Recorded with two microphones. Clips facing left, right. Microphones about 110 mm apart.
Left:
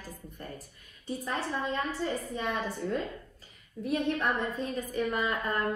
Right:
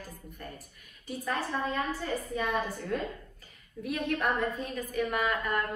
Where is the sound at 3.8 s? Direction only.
30° left (ahead or behind).